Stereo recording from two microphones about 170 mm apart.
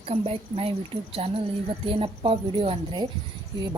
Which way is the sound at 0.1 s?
35° right (ahead or behind).